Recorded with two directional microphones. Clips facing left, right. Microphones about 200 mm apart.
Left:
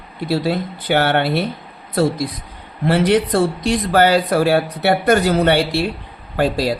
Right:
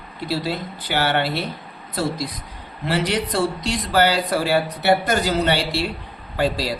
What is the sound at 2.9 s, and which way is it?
A man's voice, 55° left (ahead or behind).